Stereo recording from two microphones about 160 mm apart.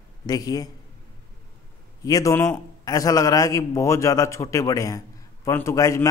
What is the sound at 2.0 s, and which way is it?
Speech, 20° left (ahead or behind).